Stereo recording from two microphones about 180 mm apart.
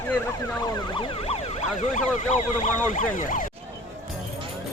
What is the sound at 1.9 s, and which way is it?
Speech, 40° left (ahead or behind).